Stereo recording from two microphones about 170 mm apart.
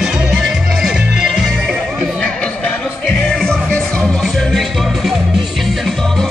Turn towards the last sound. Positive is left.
turn(degrees=0)  # may be behind; listen again after turning